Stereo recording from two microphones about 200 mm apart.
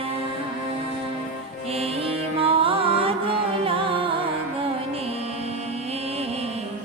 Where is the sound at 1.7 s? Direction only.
30° right (ahead or behind).